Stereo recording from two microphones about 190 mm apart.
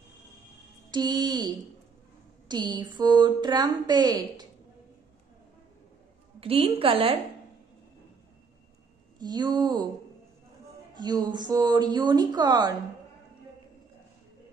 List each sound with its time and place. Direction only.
0.9 s speech: 20° right (ahead or behind)
6.4 s speech: 30° right (ahead or behind)
9.2 s speech: 20° right (ahead or behind)
11.0 s speech: 20° right (ahead or behind)